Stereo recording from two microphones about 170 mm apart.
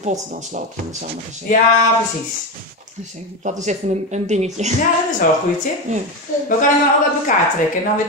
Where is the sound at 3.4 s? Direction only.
45° right (ahead or behind).